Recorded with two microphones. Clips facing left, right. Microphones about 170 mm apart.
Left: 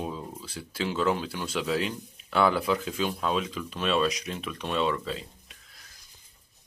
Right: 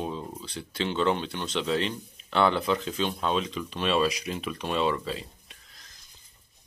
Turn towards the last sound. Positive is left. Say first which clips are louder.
# even
turn(degrees=0)  # may be behind; listen again after turning